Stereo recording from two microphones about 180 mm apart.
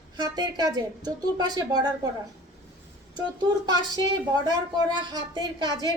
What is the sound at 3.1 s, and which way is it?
Speech, 25° right (ahead or behind).